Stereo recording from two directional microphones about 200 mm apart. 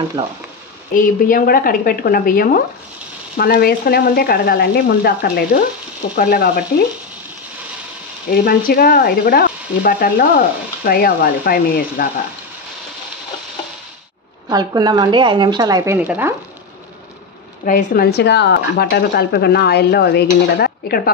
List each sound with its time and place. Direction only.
0.2 s speech: 25° right (ahead or behind)
0.9 s frying: 45° left (ahead or behind)
8.3 s frying: 50° left (ahead or behind)
14.5 s speech: 20° right (ahead or behind)
17.6 s frying: 45° left (ahead or behind)